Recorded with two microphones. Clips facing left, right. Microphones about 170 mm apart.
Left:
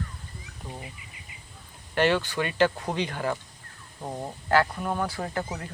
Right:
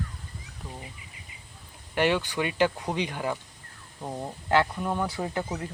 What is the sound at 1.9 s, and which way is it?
Speech, 15° right (ahead or behind).